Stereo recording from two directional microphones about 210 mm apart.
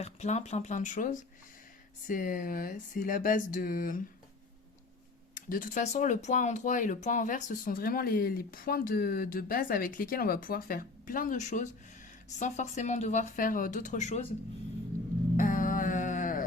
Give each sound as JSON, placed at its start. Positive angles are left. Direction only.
{"t": 0.0, "sound": "speech", "side_deg": 30}
{"t": 5.3, "sound": "speech", "side_deg": 40}
{"t": 15.4, "sound": "a sound", "side_deg": 40}